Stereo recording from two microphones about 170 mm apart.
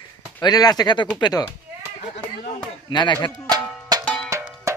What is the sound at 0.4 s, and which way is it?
Speech, 25° left (ahead or behind).